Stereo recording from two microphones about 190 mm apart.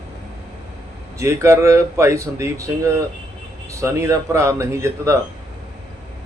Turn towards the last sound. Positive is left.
turn(degrees=-15)  # may be behind; listen again after turning